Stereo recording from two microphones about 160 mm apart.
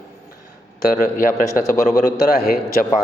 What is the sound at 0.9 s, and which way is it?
Speech, 55° left (ahead or behind).